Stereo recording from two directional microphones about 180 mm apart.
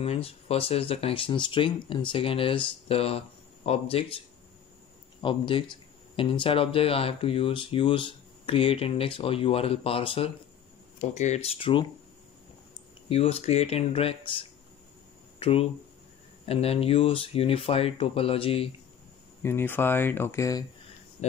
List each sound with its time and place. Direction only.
0.0 s speech: 35° left (ahead or behind)
5.2 s speech: 30° left (ahead or behind)
13.1 s speech: 35° left (ahead or behind)
19.4 s speech: 10° left (ahead or behind)